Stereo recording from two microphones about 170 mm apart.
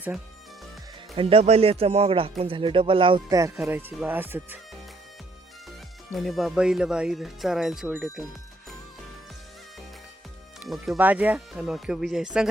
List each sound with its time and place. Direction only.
1.1 s speech: 35° right (ahead or behind)
3.6 s speech: 10° right (ahead or behind)
6.1 s speech: centre (ahead or behind)
10.6 s speech: 5° right (ahead or behind)